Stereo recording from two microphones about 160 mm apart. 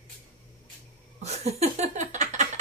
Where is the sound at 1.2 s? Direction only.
40° right (ahead or behind).